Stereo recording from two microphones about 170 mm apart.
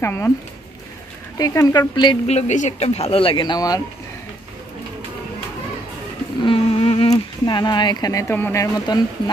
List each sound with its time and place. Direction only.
0.0 s speech: 15° left (ahead or behind)
1.4 s speech: 20° left (ahead or behind)
2.3 s speech: 45° left (ahead or behind); by 3.8 s 20° left (ahead or behind)
6.4 s speech: 30° left (ahead or behind)